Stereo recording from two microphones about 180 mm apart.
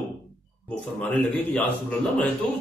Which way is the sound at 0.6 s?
10° left (ahead or behind).